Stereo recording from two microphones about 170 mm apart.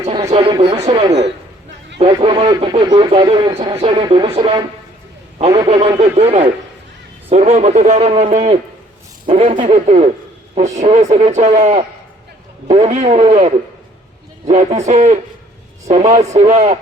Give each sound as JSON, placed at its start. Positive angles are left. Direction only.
{"t": 0.3, "sound": "speech", "side_deg": -35}
{"t": 14.4, "sound": "speech", "side_deg": -40}